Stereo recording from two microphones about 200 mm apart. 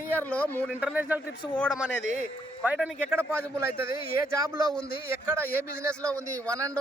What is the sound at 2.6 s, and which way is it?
Speech, 5° right (ahead or behind).